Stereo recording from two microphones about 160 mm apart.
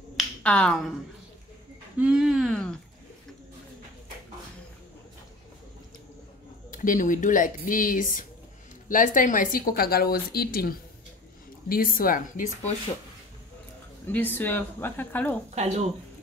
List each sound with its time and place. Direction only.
0.2 s finger snapping: 5° left (ahead or behind)
2.0 s speech: 5° right (ahead or behind)
6.7 s a woman's voice: 55° left (ahead or behind)
14.0 s speech: 10° left (ahead or behind)
15.5 s speech: 45° right (ahead or behind)